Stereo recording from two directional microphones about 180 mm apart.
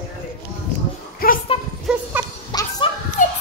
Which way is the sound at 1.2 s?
55° left (ahead or behind).